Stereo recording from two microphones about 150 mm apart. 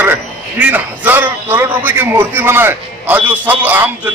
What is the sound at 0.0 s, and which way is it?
A man's voice, 10° right (ahead or behind).